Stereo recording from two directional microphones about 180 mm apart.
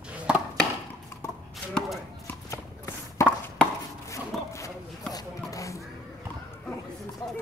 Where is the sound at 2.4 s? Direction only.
15° left (ahead or behind).